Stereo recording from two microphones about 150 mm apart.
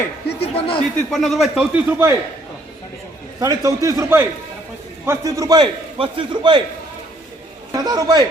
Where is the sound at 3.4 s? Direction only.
25° right (ahead or behind).